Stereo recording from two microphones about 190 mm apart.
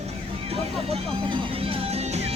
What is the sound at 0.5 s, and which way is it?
Music, 30° right (ahead or behind).